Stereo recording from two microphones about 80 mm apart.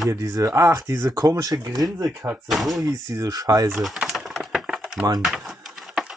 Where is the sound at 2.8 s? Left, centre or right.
Right.